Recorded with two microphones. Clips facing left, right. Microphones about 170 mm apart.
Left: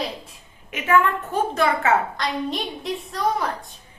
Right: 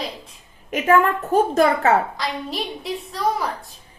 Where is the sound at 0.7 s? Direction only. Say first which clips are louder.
Right 3 dB; 40° right (ahead or behind).